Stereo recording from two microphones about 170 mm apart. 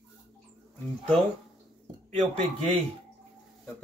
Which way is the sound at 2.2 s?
35° right (ahead or behind).